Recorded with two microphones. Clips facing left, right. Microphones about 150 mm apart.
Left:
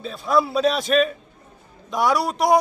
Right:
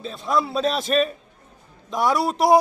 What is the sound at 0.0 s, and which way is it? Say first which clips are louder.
A man's voice: left 3 dB; centre (ahead or behind).